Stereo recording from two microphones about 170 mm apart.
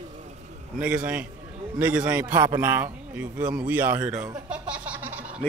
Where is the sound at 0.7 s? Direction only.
5° right (ahead or behind).